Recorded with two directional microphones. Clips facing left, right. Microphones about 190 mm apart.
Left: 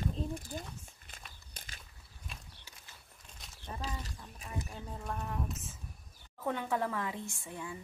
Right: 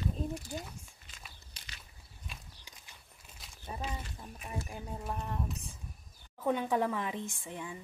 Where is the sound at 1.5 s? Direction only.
50° left (ahead or behind).